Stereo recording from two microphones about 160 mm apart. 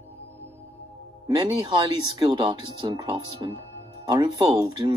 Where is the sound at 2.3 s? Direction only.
35° right (ahead or behind).